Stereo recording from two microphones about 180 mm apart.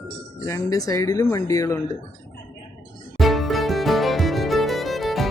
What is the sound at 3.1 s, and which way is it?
Music, centre (ahead or behind).